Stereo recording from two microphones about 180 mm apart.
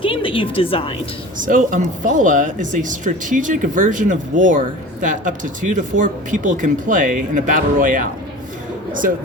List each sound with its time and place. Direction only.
0.0 s speech: 30° left (ahead or behind)
1.4 s speech: 50° right (ahead or behind)